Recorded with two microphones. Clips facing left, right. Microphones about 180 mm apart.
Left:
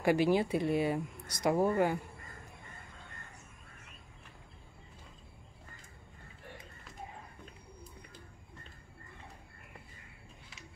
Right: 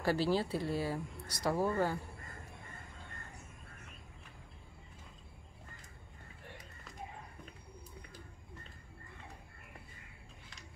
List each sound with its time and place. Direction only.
0.0 s speech: 15° left (ahead or behind)